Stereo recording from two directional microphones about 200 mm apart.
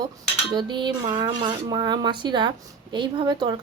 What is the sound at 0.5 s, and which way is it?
Speech, 25° right (ahead or behind).